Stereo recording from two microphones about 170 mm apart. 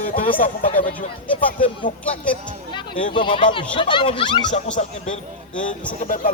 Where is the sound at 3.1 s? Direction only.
30° left (ahead or behind).